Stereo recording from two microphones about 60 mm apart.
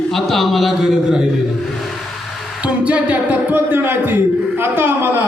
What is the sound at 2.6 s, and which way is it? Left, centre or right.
A man's voice, right.